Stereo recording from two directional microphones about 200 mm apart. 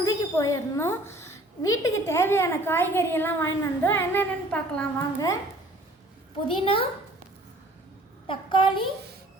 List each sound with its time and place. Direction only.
0.0 s a woman's voice: 15° left (ahead or behind)
6.6 s a child's voice: 25° left (ahead or behind)
8.3 s a child's voice: 25° left (ahead or behind)